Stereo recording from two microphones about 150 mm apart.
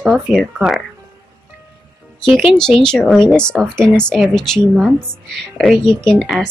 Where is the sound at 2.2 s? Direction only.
Centre (ahead or behind).